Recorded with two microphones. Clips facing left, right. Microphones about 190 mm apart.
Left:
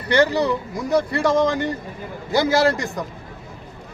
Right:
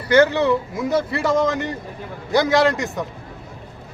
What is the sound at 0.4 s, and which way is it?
Speech, centre (ahead or behind).